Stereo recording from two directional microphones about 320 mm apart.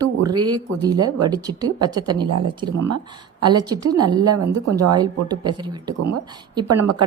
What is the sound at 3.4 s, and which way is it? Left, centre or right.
A woman's voice, centre.